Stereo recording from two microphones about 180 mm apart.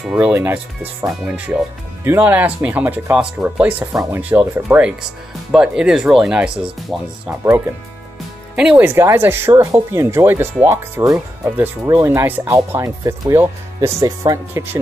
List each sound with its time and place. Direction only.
0.0 s speech: 5° right (ahead or behind)
3.9 s speech: 20° right (ahead or behind)